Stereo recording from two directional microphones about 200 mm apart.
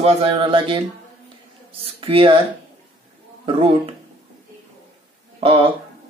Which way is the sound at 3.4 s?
25° right (ahead or behind).